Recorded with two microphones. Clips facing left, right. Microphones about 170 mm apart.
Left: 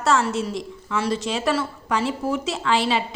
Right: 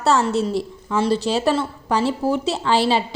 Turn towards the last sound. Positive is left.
turn(degrees=-35)  # may be behind; listen again after turning